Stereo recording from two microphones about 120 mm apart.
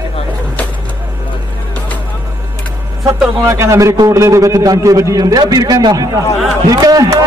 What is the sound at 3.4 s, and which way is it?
A man's voice, 25° right (ahead or behind).